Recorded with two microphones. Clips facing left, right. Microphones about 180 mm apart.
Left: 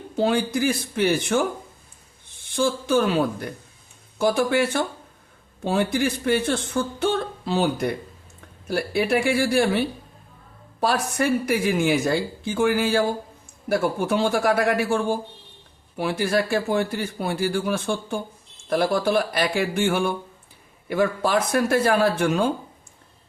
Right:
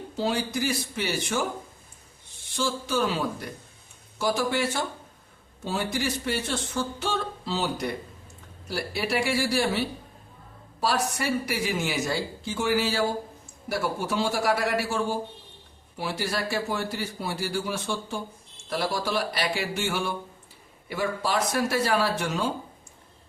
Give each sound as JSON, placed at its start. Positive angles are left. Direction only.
{"t": 0.2, "sound": "speech", "side_deg": 55}
{"t": 2.6, "sound": "speech", "side_deg": 55}